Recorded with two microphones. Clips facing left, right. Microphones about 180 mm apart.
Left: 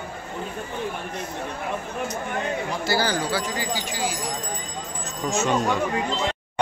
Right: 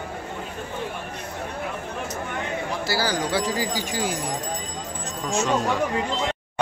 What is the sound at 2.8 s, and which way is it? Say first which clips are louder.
Speech: left 3 dB; 5° right (ahead or behind).